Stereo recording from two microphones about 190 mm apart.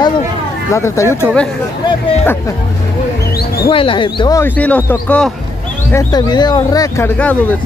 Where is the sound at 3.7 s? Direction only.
25° left (ahead or behind).